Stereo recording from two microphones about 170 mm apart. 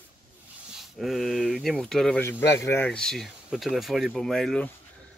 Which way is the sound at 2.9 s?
5° left (ahead or behind).